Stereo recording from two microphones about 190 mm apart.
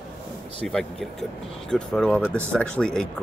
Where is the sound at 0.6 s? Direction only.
Centre (ahead or behind).